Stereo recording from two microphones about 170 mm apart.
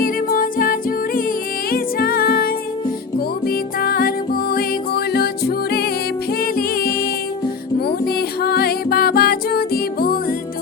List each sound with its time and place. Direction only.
0.0 s music: 55° left (ahead or behind)